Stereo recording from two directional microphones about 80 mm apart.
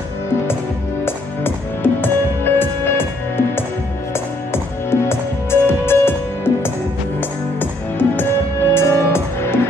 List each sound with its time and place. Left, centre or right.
1.0 s music: left
5.0 s music: left
8.7 s music: left